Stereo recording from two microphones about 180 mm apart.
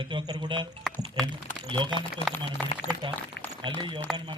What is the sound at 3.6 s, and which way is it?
Speech, 25° right (ahead or behind).